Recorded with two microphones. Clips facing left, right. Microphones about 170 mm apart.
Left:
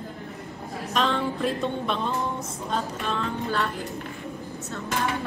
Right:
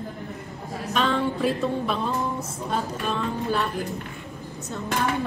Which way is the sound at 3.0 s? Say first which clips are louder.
Right 2 dB; 15° right (ahead or behind).